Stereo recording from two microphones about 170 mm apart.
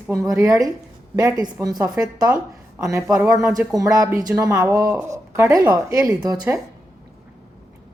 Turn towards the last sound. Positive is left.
turn(degrees=-20)  # may be behind; listen again after turning